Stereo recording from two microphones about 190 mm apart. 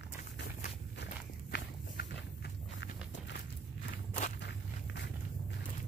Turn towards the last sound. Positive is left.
turn(degrees=65)  # may be behind; listen again after turning